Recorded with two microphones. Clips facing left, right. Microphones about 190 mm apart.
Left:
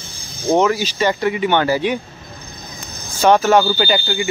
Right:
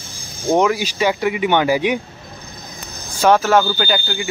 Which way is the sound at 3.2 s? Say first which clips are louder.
Left 1 dB; centre (ahead or behind).